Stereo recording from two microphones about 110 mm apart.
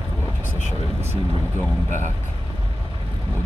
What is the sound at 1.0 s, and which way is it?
Vehicle, 20° right (ahead or behind).